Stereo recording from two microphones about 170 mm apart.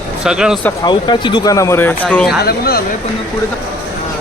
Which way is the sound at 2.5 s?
65° left (ahead or behind).